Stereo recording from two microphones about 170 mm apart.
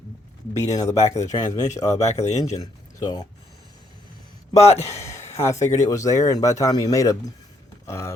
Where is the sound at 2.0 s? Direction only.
40° left (ahead or behind).